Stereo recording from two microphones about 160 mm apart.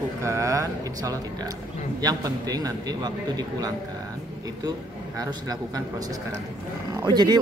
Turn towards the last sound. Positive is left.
turn(degrees=-25)  # may be behind; listen again after turning